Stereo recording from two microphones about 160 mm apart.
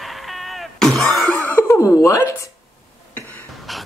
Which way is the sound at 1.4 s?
10° left (ahead or behind).